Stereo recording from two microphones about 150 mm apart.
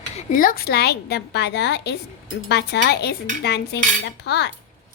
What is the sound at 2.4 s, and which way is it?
Dishes, 90° left.